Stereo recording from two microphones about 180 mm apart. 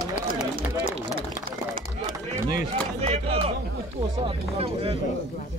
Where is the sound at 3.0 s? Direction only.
35° right (ahead or behind).